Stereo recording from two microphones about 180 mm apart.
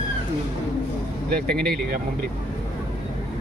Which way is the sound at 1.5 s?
5° left (ahead or behind).